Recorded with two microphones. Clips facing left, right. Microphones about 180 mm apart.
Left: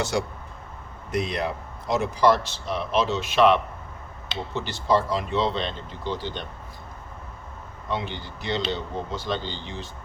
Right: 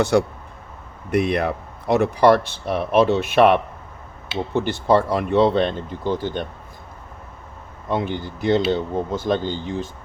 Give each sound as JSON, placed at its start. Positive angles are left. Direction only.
{"t": 0.0, "sound": "speech", "side_deg": -60}
{"t": 7.9, "sound": "speech", "side_deg": -50}